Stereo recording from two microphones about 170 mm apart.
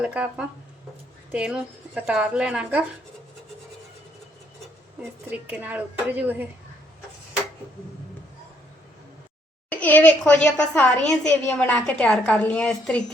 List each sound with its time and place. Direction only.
0.0 s a woman's voice: 5° right (ahead or behind)
5.3 s a woman's voice: 10° right (ahead or behind)
9.6 s a woman's voice: 10° left (ahead or behind)